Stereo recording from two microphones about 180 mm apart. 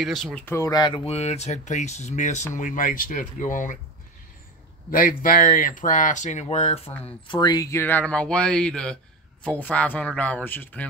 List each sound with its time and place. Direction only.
0.0 s speech: centre (ahead or behind)
0.6 s speech: 20° left (ahead or behind); by 3.7 s 45° left (ahead or behind)
4.9 s speech: 50° left (ahead or behind)
7.2 s speech: 20° left (ahead or behind)